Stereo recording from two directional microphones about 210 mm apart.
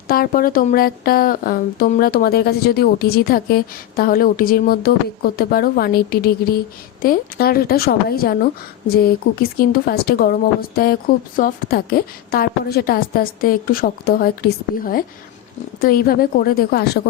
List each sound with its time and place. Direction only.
0.1 s speech: 45° left (ahead or behind)